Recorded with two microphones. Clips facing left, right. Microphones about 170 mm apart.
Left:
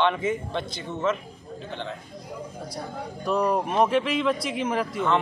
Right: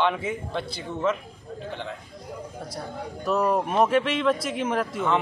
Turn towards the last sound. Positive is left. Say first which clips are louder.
# even
turn(degrees=-5)  # may be behind; listen again after turning